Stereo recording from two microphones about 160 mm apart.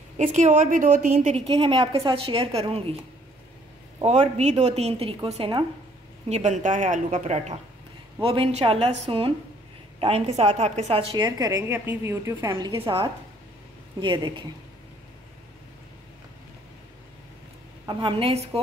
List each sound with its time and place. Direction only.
0.2 s a woman's voice: 50° right (ahead or behind)
4.0 s a woman's voice: 45° right (ahead or behind)
6.2 s a woman's voice: 45° right (ahead or behind)
8.2 s a woman's voice: 35° right (ahead or behind)
12.7 s a woman's voice: 35° right (ahead or behind)
17.8 s a woman's voice: 35° right (ahead or behind)